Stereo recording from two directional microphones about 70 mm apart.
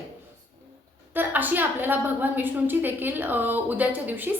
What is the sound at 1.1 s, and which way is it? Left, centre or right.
A woman's voice, right.